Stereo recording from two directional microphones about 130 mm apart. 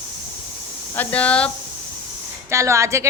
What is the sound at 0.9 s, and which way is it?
Speech, 10° left (ahead or behind).